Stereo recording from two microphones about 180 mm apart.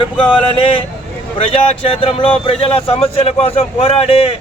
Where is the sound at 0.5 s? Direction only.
30° left (ahead or behind).